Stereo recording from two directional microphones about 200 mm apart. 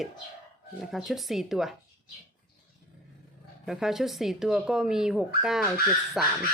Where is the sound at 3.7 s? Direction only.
Centre (ahead or behind).